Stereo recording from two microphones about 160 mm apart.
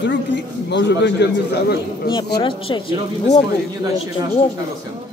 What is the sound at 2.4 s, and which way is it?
Speech, 30° left (ahead or behind).